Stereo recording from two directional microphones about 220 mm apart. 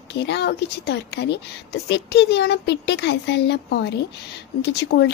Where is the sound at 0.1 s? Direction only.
50° left (ahead or behind).